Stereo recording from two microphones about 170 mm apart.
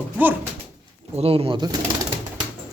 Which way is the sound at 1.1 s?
35° right (ahead or behind).